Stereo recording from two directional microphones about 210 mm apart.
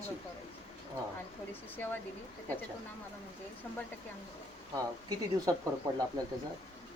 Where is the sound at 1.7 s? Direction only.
10° left (ahead or behind).